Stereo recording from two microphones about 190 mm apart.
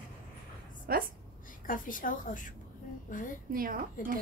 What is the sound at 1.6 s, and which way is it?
Speech, 45° left (ahead or behind).